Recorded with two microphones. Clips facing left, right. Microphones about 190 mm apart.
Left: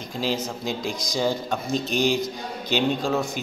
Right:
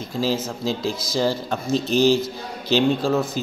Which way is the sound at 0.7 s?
15° left (ahead or behind).